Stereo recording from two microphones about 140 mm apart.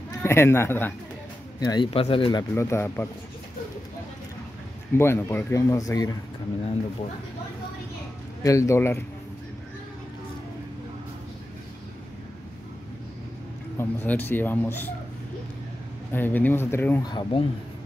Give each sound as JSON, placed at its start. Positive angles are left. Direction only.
{"t": 0.2, "sound": "speech", "side_deg": 20}
{"t": 1.6, "sound": "speech", "side_deg": 30}
{"t": 1.9, "sound": "speech", "side_deg": 40}
{"t": 2.5, "sound": "speech", "side_deg": 20}
{"t": 4.9, "sound": "speech", "side_deg": 15}
{"t": 8.4, "sound": "speech", "side_deg": 25}
{"t": 13.7, "sound": "speech", "side_deg": 15}
{"t": 16.1, "sound": "speech", "side_deg": 15}
{"t": 17.0, "sound": "speech", "side_deg": 30}